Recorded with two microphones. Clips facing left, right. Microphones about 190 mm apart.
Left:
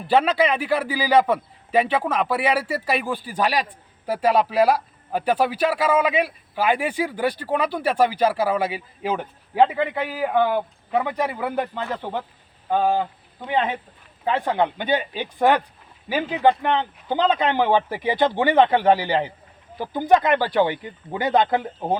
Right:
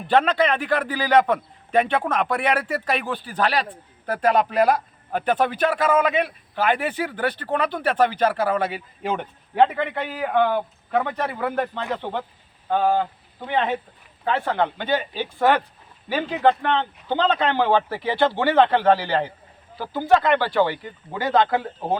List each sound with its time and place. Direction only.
0.1 s a man's voice: 10° left (ahead or behind)
14.3 s a man's voice: 15° left (ahead or behind)